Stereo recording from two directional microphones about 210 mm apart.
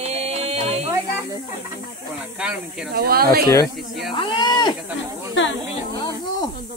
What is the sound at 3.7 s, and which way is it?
Speech, centre (ahead or behind).